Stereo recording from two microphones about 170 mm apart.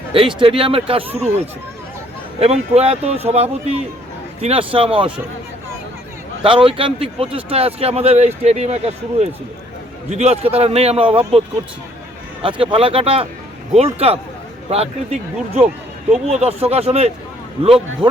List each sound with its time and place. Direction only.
0.1 s a man's voice: 30° right (ahead or behind)
2.4 s a man's voice: 40° right (ahead or behind)
6.4 s a man's voice: 30° right (ahead or behind)
10.1 s a man's voice: 40° right (ahead or behind)